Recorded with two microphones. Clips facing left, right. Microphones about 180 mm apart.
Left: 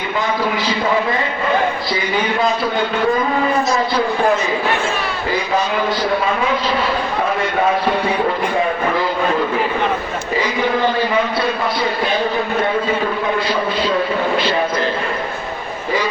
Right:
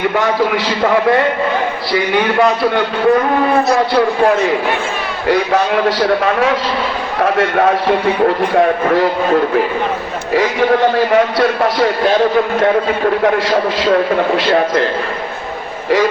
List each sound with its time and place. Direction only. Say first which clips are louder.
1.9 s a man's voice: right 5 dB; 75° right (ahead or behind)
5.3 s a man's voice: right 7 dB; 75° right (ahead or behind)
6.2 s a man's voice: right 4 dB; 85° right
11.1 s a man's voice: right 6 dB; 85° right